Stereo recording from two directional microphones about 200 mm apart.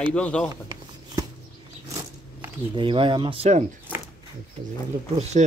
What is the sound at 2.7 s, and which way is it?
Speech, 25° right (ahead or behind).